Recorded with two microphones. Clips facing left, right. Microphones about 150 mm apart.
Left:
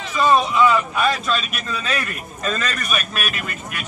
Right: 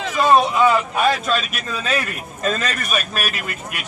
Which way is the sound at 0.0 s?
55° right (ahead or behind).